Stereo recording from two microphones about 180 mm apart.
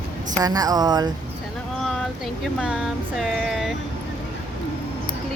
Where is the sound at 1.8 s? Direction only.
Centre (ahead or behind).